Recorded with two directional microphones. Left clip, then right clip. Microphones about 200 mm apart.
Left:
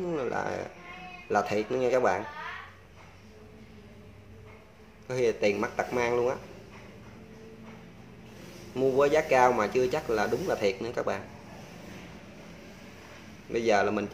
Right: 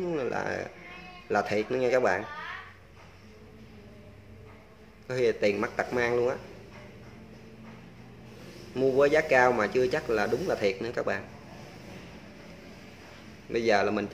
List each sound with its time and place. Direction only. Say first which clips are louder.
0.0 s a man's voice: even; 10° right (ahead or behind)
5.0 s a man's voice: even; 5° right (ahead or behind)
8.7 s speech: right 1 dB; 5° right (ahead or behind)
13.5 s speech: even; 5° right (ahead or behind)